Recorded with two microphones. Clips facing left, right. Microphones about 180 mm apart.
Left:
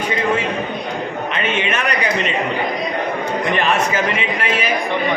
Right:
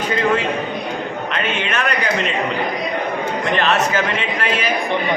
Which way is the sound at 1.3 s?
Centre (ahead or behind).